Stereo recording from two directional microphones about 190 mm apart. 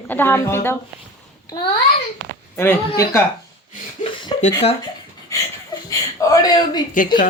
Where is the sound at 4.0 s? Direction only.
25° left (ahead or behind).